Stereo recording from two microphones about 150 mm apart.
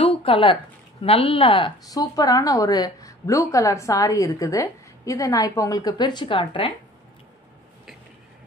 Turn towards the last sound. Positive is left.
turn(degrees=35)  # may be behind; listen again after turning